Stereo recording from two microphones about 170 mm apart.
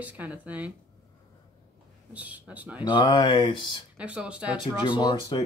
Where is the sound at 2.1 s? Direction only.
10° right (ahead or behind).